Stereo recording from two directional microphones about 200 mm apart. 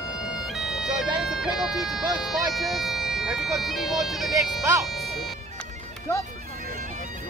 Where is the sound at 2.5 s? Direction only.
Centre (ahead or behind).